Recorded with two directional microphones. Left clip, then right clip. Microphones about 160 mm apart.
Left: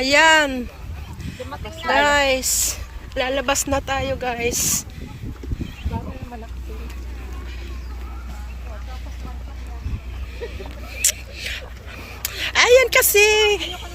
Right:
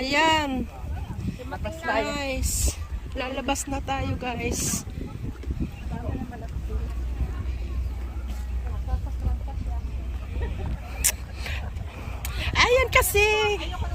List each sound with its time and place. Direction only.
0.0 s speech: 10° right (ahead or behind)
11.0 s a sound: 25° right (ahead or behind)
12.2 s a woman's voice: 10° right (ahead or behind)